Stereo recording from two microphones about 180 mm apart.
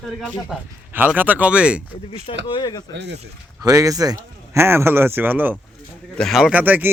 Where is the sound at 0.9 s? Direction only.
10° right (ahead or behind).